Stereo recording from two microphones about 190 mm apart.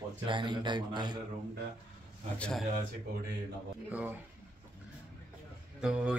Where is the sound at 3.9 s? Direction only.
10° right (ahead or behind).